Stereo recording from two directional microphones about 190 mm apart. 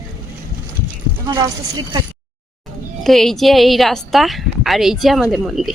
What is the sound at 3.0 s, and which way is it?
A woman's voice, centre (ahead or behind).